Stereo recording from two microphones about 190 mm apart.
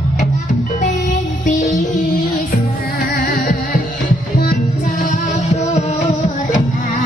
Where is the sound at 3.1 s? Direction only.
50° left (ahead or behind).